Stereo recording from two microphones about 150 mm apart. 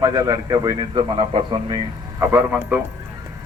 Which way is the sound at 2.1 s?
10° right (ahead or behind).